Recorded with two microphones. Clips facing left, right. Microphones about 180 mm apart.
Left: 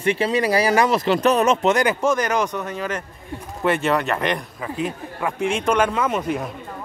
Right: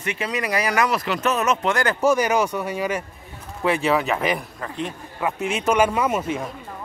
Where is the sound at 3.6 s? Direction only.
Centre (ahead or behind).